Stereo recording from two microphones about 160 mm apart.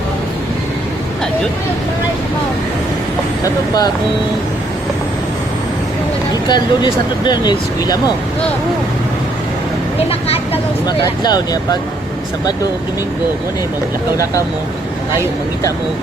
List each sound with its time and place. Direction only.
3.4 s speech: 25° left (ahead or behind)
6.5 s speech: 25° left (ahead or behind)
10.1 s speech: 40° left (ahead or behind)
10.8 s speech: 25° left (ahead or behind)